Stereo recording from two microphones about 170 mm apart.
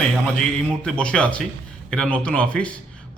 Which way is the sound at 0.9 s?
5° left (ahead or behind).